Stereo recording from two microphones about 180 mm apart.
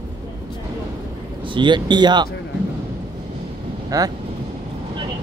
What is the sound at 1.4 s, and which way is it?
Speech, 25° right (ahead or behind).